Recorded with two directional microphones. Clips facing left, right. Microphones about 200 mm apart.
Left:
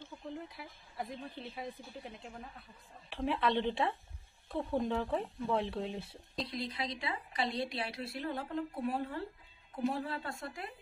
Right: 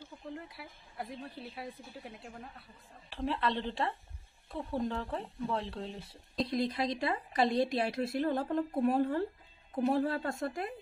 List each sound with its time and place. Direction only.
0.0 s a sound: centre (ahead or behind)
0.6 s a woman's voice: centre (ahead or behind)
6.4 s a woman's voice: 45° right (ahead or behind)